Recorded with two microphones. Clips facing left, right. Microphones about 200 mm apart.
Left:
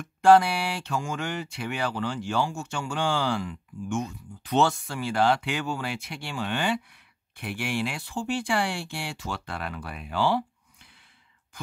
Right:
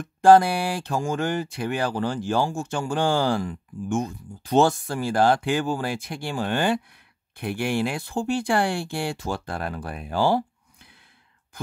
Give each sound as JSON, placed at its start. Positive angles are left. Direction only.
{"t": 0.0, "sound": "speech", "side_deg": -45}
{"t": 8.2, "sound": "speech", "side_deg": -55}